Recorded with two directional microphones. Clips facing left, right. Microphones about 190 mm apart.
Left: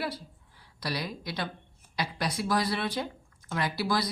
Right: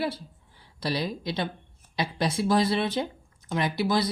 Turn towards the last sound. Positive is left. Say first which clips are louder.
# right 4 dB
turn(degrees=-25)  # may be behind; listen again after turning